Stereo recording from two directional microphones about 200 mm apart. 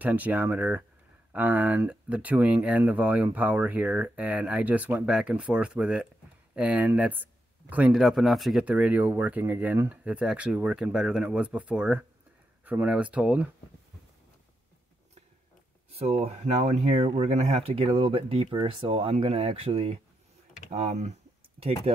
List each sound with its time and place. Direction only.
0.0 s speech: 10° right (ahead or behind)
15.9 s speech: 30° right (ahead or behind)